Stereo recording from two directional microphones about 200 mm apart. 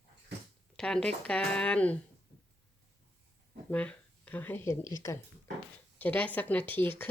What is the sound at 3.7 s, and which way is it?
Speech, 5° left (ahead or behind).